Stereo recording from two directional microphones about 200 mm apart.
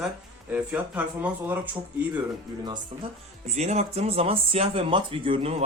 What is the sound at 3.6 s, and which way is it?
Speech, 35° right (ahead or behind).